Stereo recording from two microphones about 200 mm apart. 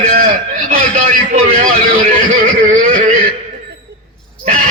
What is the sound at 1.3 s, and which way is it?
A man's voice, 40° right (ahead or behind).